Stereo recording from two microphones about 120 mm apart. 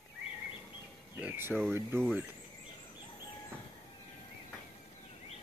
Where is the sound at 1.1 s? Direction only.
15° right (ahead or behind).